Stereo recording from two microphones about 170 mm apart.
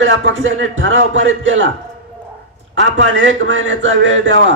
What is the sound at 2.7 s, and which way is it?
A man's voice, 90° right.